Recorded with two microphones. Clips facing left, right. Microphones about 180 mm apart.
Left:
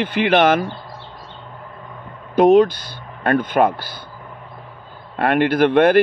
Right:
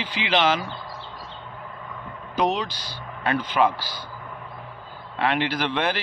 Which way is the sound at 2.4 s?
50° left (ahead or behind).